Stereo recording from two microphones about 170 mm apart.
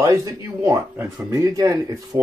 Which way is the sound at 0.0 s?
20° right (ahead or behind).